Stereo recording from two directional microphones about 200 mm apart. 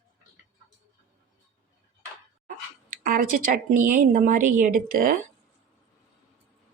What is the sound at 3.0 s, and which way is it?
A woman's voice, 45° right (ahead or behind).